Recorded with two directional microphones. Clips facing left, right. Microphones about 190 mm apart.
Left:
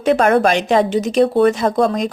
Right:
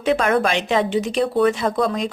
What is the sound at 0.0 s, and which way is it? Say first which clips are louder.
A woman's voice: left 5 dB; 45° left (ahead or behind).